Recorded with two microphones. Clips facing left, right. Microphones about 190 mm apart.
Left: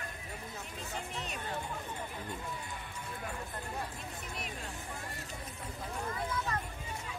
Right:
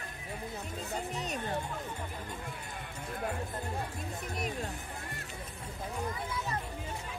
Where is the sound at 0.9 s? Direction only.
40° right (ahead or behind).